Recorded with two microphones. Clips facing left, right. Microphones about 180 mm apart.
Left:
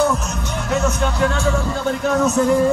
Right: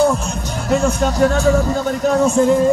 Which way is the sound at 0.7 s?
35° right (ahead or behind).